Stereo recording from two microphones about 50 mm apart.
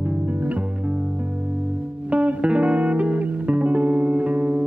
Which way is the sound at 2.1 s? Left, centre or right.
Right.